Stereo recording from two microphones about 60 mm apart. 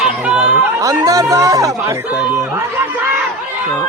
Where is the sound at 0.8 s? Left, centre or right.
Right.